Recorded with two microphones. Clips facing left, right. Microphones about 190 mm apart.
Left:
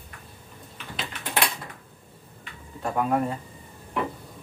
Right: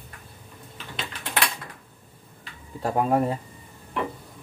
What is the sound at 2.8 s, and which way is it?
Speech, 35° right (ahead or behind).